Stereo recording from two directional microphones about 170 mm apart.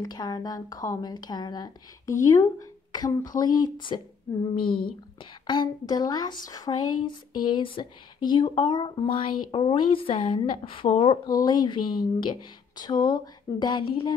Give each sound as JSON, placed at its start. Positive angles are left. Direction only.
{"t": 0.0, "sound": "speech", "side_deg": 25}
{"t": 4.6, "sound": "speech", "side_deg": 60}
{"t": 4.8, "sound": "a woman's voice", "side_deg": 30}
{"t": 11.2, "sound": "speech", "side_deg": 25}